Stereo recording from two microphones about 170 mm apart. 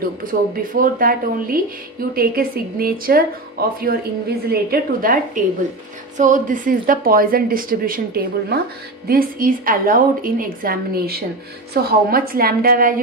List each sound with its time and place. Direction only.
0.2 s speech: 55° right (ahead or behind)